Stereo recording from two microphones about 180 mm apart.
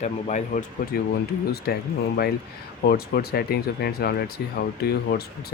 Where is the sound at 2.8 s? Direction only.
60° left (ahead or behind).